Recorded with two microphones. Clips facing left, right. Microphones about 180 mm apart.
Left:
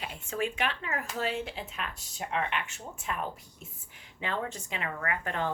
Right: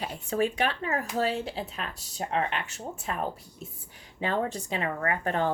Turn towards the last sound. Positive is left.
turn(degrees=-35)  # may be behind; listen again after turning